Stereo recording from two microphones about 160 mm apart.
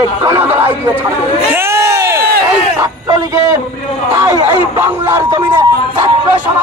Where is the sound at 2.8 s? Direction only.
20° right (ahead or behind).